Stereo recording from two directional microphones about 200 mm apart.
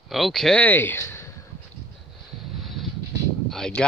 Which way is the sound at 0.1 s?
Centre (ahead or behind).